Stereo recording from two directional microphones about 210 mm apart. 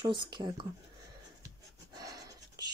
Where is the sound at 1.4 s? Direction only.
15° right (ahead or behind).